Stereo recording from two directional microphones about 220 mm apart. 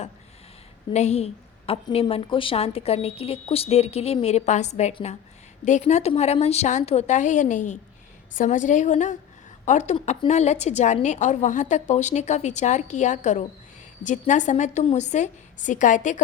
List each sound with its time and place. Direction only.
0.9 s a woman's voice: 30° left (ahead or behind)